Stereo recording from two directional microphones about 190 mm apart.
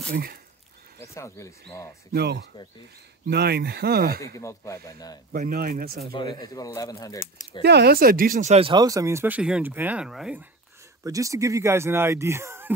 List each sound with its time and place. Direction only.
0.1 s speech: 55° right (ahead or behind)
1.1 s speech: 15° left (ahead or behind)
2.1 s speech: 60° right (ahead or behind)
4.4 s speech: 15° left (ahead or behind)
5.3 s speech: 50° right (ahead or behind)
6.1 s speech: 20° left (ahead or behind)
7.6 s speech: 60° right (ahead or behind); by 10.4 s 5° right (ahead or behind)
11.1 s speech: 15° right (ahead or behind)